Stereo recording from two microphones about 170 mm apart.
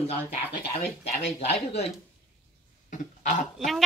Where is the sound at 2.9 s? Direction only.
50° left (ahead or behind).